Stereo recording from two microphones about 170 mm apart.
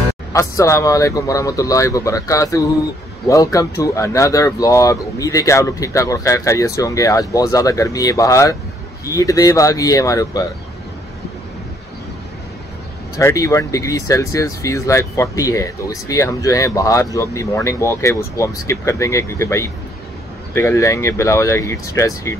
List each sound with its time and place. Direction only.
0.3 s speech: 20° left (ahead or behind)
13.2 s speech: 20° left (ahead or behind)